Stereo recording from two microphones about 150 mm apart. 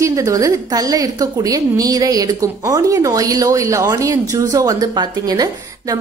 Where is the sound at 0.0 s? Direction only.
20° right (ahead or behind).